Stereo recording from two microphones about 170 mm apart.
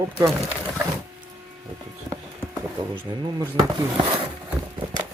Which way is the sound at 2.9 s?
25° right (ahead or behind).